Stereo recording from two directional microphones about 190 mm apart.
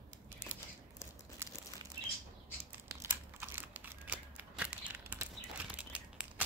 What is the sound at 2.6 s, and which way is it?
Crumpling, 10° right (ahead or behind).